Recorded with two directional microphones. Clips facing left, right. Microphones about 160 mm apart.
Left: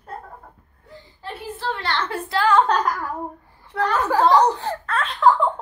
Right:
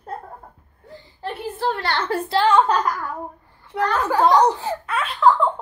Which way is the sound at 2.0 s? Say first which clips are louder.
Right 2 dB; 35° right (ahead or behind).